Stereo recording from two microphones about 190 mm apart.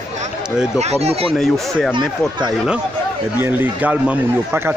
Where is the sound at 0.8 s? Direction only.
35° right (ahead or behind).